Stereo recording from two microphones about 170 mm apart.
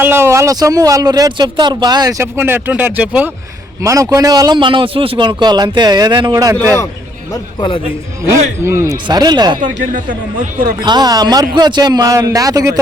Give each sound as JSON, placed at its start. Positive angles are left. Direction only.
{"t": 0.0, "sound": "speech", "side_deg": -15}
{"t": 3.8, "sound": "a man's voice", "side_deg": -20}
{"t": 8.2, "sound": "a man's voice", "side_deg": -15}
{"t": 9.9, "sound": "a man's voice", "side_deg": -50}
{"t": 10.8, "sound": "a man's voice", "side_deg": -25}